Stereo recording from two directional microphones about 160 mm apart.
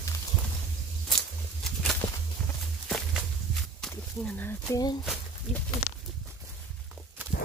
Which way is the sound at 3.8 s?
5° left (ahead or behind).